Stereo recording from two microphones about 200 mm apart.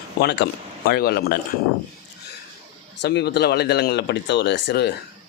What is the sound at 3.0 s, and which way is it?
Speech, 60° left (ahead or behind).